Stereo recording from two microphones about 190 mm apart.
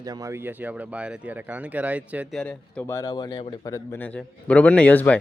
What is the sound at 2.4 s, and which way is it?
A man's voice, 5° left (ahead or behind).